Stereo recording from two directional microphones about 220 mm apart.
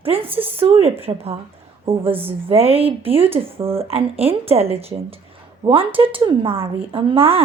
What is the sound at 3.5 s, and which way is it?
Speech, 10° right (ahead or behind).